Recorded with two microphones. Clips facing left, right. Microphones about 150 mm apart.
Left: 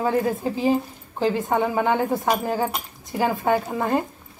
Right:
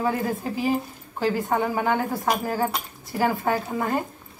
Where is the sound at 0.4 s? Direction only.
20° left (ahead or behind).